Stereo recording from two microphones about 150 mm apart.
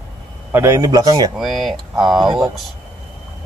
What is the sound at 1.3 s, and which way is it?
Speech, centre (ahead or behind).